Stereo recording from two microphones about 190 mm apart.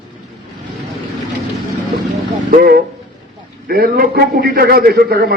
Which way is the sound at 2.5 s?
50° right (ahead or behind).